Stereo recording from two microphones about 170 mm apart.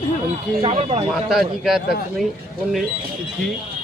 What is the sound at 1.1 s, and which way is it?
Speech, 5° right (ahead or behind).